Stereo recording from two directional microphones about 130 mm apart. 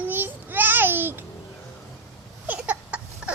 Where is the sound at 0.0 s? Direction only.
15° right (ahead or behind).